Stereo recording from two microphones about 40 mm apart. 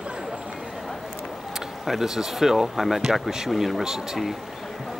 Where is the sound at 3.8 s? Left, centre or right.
Centre.